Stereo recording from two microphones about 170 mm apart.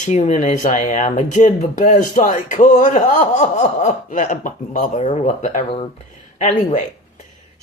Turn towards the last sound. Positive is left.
turn(degrees=45)  # may be behind; listen again after turning